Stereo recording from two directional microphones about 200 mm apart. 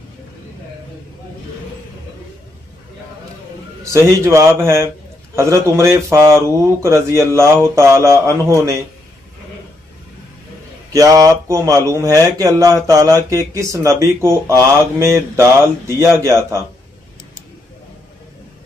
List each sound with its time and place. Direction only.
3.8 s a man's voice: 15° right (ahead or behind)
10.9 s a man's voice: 15° right (ahead or behind)